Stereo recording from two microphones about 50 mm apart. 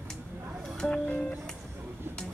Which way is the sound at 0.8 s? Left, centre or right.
Left.